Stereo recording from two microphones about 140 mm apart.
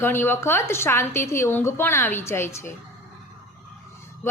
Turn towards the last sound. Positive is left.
turn(degrees=15)  # may be behind; listen again after turning